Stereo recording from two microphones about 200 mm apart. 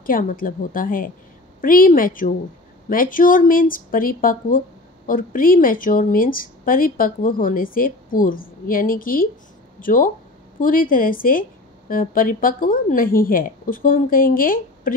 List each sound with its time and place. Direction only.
0.0 s speech: 45° left (ahead or behind)